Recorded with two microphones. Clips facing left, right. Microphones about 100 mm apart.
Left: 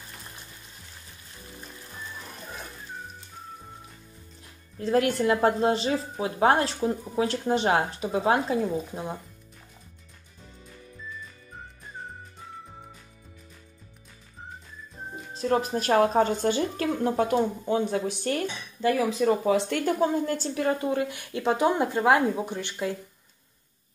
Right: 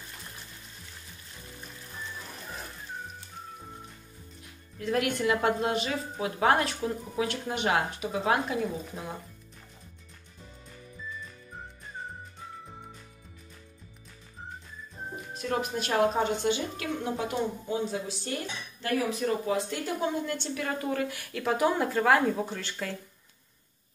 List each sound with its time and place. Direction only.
4.7 s a woman's voice: 30° left (ahead or behind)
15.3 s a woman's voice: 35° left (ahead or behind); by 18.4 s 60° left (ahead or behind)
19.5 s speech: 70° left (ahead or behind)
20.0 s a woman's voice: 40° left (ahead or behind); by 22.9 s 20° left (ahead or behind)